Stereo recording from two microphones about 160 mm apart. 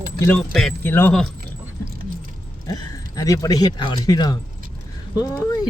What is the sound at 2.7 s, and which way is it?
Speech, 20° left (ahead or behind).